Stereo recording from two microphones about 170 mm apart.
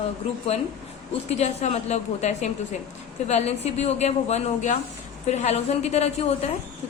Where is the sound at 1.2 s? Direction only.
40° left (ahead or behind).